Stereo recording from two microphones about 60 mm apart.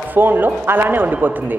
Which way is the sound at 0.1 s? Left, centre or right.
Right.